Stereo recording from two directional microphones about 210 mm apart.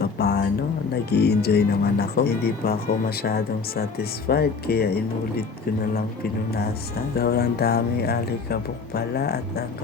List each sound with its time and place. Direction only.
0.2 s a sound: 50° left (ahead or behind)
1.1 s speech: 50° left (ahead or behind)
7.2 s speech: 50° left (ahead or behind)